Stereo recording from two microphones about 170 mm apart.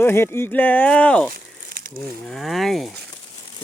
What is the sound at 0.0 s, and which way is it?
Speech, 15° left (ahead or behind).